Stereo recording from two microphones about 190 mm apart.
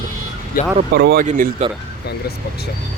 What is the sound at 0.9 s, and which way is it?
Speech, 55° right (ahead or behind).